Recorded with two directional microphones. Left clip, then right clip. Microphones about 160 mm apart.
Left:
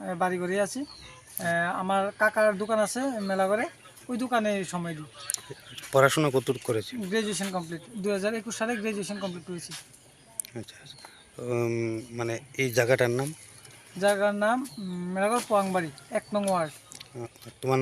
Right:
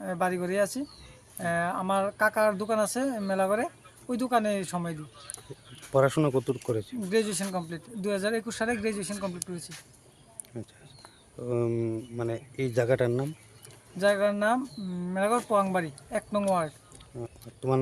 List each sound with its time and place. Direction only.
0.0 s speech: 25° right (ahead or behind)
4.7 s speech: 15° right (ahead or behind)
7.1 s speech: 30° right (ahead or behind); by 13.1 s 10° right (ahead or behind)
13.1 s speech: centre (ahead or behind)
14.0 s speech: 25° right (ahead or behind)
16.6 s a sound: 15° right (ahead or behind)